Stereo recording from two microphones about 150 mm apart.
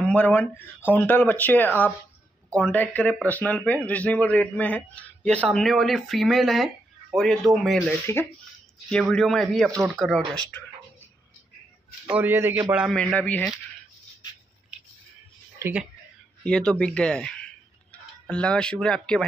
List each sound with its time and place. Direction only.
0.0 s speech: 10° left (ahead or behind)
7.9 s speech: 15° left (ahead or behind)
8.8 s speech: 5° left (ahead or behind)
12.1 s a man's voice: 15° right (ahead or behind)
12.7 s speech: 5° right (ahead or behind)
13.0 s speech: 10° left (ahead or behind)
15.6 s speech: 5° right (ahead or behind)
16.4 s speech: 5° left (ahead or behind)